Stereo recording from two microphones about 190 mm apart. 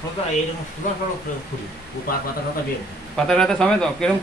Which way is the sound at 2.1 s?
50° left (ahead or behind).